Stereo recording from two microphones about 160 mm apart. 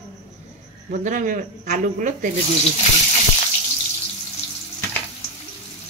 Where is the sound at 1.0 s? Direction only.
55° right (ahead or behind).